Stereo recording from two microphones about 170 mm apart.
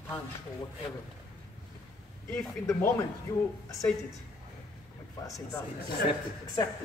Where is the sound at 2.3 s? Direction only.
Centre (ahead or behind).